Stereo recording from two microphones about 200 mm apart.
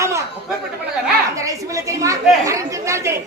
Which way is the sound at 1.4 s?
15° right (ahead or behind).